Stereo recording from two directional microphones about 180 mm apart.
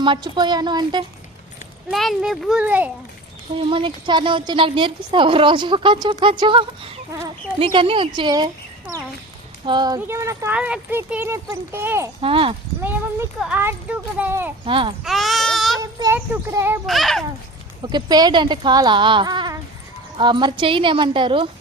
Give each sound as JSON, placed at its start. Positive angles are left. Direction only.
{"t": 0.0, "sound": "a woman's voice", "side_deg": -25}
{"t": 1.9, "sound": "speech", "side_deg": 0}
{"t": 3.6, "sound": "a woman's voice", "side_deg": -30}
{"t": 9.6, "sound": "speech", "side_deg": -25}
{"t": 12.2, "sound": "a woman's voice", "side_deg": -30}
{"t": 12.8, "sound": "speech", "side_deg": -10}
{"t": 14.6, "sound": "a woman's voice", "side_deg": -30}
{"t": 15.0, "sound": "child singing", "side_deg": 0}
{"t": 15.8, "sound": "a child's voice", "side_deg": -15}
{"t": 16.8, "sound": "speech", "side_deg": 0}
{"t": 17.8, "sound": "a woman's voice", "side_deg": -25}